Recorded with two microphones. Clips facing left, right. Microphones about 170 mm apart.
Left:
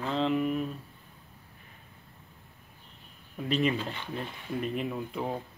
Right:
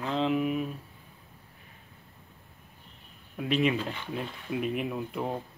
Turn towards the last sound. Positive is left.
turn(degrees=0)  # may be behind; listen again after turning